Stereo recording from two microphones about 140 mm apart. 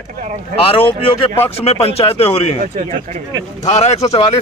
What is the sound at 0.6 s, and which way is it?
Speech, 40° left (ahead or behind).